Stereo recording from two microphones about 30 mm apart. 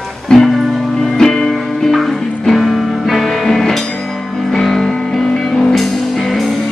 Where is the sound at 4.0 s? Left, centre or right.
Centre.